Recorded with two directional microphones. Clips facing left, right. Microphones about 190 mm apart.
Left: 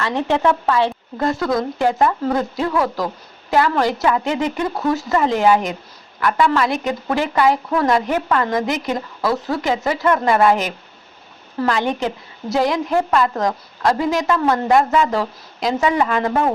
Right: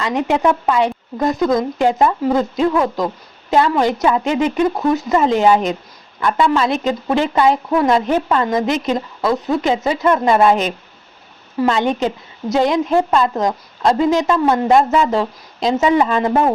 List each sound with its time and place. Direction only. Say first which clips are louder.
0.0 s a woman's voice: right 2 dB; 15° right (ahead or behind)